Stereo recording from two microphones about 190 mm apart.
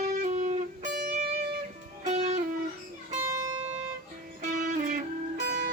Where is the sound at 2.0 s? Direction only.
40° right (ahead or behind).